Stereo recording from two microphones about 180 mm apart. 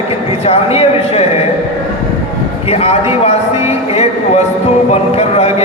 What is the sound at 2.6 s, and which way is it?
A man's voice, 35° left (ahead or behind).